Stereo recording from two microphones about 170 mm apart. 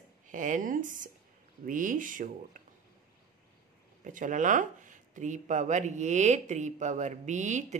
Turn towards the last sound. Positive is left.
turn(degrees=-45)  # may be behind; listen again after turning